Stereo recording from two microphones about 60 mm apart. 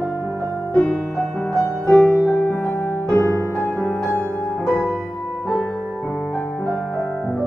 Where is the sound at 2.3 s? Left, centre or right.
Left.